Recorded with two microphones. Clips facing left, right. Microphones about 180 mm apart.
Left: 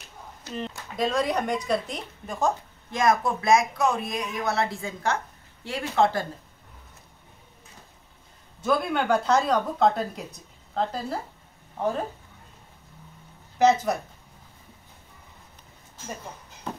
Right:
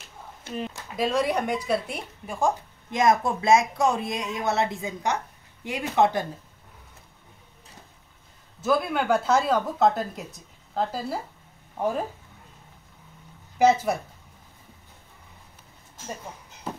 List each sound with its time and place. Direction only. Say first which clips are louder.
0.6 s a woman's voice: even; 5° right (ahead or behind)
8.6 s a woman's voice: right 1 dB; 5° right (ahead or behind)
13.6 s speech: even; 10° right (ahead or behind)